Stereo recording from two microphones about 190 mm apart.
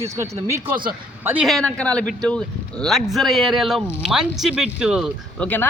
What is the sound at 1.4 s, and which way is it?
Speech, 5° left (ahead or behind).